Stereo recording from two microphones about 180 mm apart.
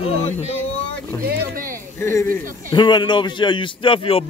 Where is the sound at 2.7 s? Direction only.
25° left (ahead or behind).